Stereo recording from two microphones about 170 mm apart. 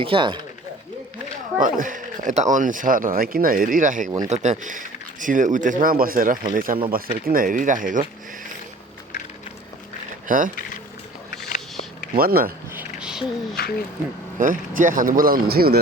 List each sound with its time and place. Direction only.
0.0 s speech: 30° right (ahead or behind)
1.5 s speech: 50° right (ahead or behind)
10.2 s speech: 50° right (ahead or behind)
11.4 s biting: 55° left (ahead or behind)
12.1 s speech: 60° right (ahead or behind)
12.7 s a sound: 10° right (ahead or behind)
13.6 s speech: 65° left (ahead or behind)
14.3 s speech: 50° right (ahead or behind)